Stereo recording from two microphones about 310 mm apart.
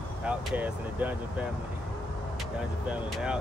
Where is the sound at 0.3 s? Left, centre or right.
Centre.